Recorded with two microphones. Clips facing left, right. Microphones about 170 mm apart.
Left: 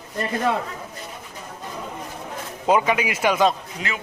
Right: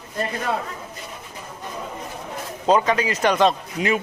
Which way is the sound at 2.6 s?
10° left (ahead or behind).